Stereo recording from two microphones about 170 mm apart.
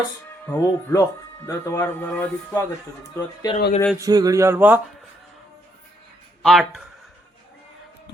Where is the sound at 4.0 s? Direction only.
20° right (ahead or behind).